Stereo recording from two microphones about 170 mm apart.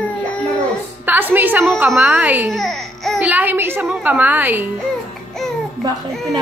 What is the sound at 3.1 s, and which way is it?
Speech, 10° right (ahead or behind).